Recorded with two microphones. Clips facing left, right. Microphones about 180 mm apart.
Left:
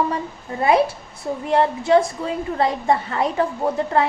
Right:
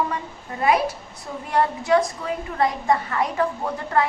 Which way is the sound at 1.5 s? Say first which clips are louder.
Left 3 dB; 25° left (ahead or behind).